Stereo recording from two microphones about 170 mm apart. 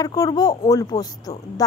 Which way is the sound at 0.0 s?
20° left (ahead or behind).